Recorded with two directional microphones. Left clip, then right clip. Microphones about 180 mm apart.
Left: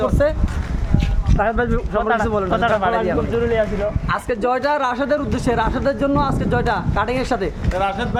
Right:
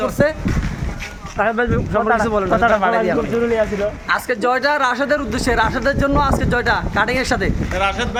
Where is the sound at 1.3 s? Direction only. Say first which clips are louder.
Right 2 dB; 15° right (ahead or behind).